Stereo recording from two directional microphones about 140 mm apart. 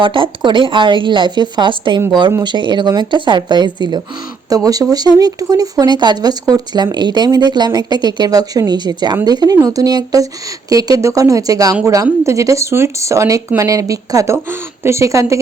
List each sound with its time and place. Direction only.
0.0 s a woman's voice: 35° right (ahead or behind); by 15.4 s 20° right (ahead or behind)